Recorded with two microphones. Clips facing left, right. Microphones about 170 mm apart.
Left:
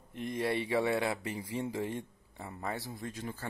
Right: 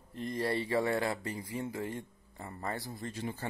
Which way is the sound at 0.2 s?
5° left (ahead or behind).